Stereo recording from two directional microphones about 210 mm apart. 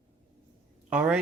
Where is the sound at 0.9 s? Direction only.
5° right (ahead or behind).